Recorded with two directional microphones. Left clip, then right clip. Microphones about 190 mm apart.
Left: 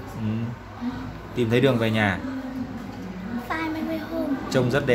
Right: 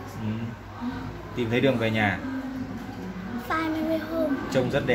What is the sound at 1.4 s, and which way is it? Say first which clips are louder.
Speech: left 3 dB; 25° left (ahead or behind).